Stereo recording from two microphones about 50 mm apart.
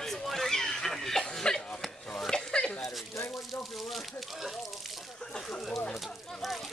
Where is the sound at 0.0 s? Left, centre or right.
Centre; by 2.8 s left.